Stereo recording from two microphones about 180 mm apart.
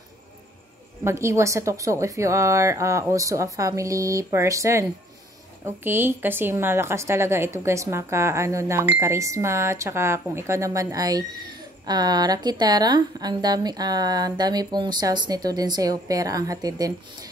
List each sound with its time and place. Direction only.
1.0 s a woman's voice: 15° right (ahead or behind)